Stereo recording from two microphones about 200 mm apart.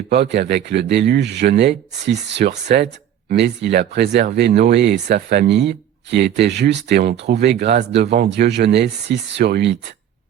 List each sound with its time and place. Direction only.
0.1 s speech: 60° right (ahead or behind)